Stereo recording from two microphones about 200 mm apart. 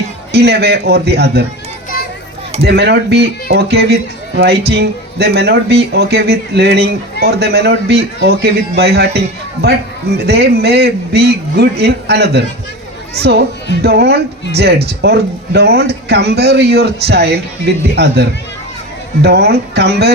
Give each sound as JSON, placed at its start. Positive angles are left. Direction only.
{"t": 0.3, "sound": "a man's voice", "side_deg": -55}
{"t": 2.6, "sound": "a man's voice", "side_deg": -55}